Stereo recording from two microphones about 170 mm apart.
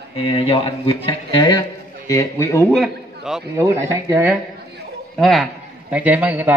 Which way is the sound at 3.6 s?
15° right (ahead or behind).